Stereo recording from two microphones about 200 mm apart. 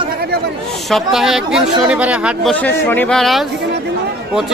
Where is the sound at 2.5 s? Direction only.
10° left (ahead or behind).